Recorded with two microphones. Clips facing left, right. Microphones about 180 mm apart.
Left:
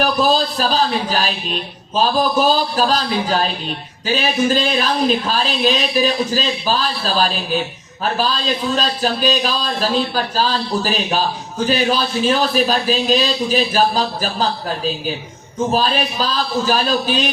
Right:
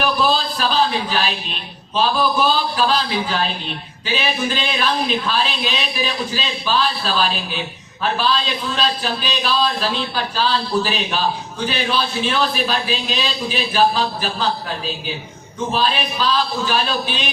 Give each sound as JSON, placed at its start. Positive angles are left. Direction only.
{"t": 0.0, "sound": "a sound", "side_deg": 40}
{"t": 2.0, "sound": "speech", "side_deg": 40}
{"t": 15.7, "sound": "speech", "side_deg": 40}